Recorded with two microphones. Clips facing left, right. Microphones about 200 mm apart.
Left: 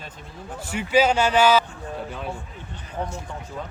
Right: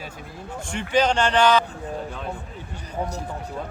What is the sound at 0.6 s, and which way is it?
Speech, 5° left (ahead or behind).